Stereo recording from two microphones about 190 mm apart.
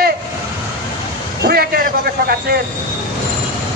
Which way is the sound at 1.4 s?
55° right (ahead or behind).